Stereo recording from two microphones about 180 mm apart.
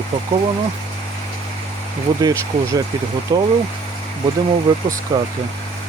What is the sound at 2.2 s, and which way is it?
Speech, 20° right (ahead or behind).